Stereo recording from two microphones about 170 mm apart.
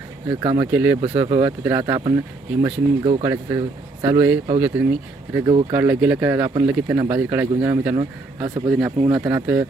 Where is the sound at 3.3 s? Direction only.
20° right (ahead or behind).